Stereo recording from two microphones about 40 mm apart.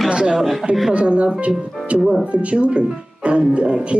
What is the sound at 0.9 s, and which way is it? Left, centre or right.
Speech, right.